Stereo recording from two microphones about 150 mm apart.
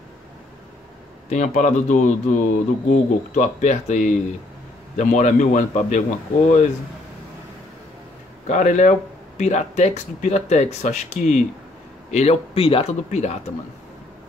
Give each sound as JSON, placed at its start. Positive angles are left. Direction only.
{"t": 1.3, "sound": "speech", "side_deg": 50}
{"t": 8.5, "sound": "speech", "side_deg": 50}